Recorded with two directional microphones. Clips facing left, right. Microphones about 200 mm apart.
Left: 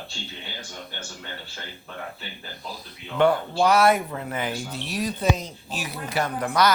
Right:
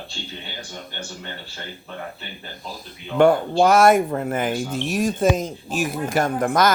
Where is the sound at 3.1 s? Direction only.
45° right (ahead or behind).